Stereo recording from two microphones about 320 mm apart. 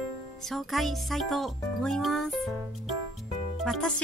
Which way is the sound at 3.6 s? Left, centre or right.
Centre.